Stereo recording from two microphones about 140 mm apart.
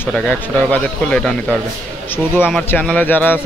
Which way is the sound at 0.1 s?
10° left (ahead or behind).